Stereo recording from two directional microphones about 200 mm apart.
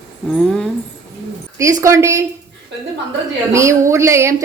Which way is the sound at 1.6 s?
15° right (ahead or behind).